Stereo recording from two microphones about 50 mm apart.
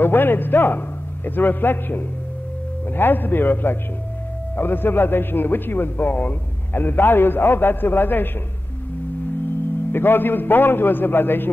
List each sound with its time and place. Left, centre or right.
0.0 s a man's voice: left
9.9 s a man's voice: left